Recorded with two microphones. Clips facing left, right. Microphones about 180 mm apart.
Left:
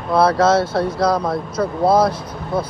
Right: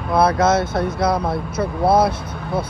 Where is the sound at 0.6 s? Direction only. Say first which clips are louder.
Left 2 dB; 20° right (ahead or behind).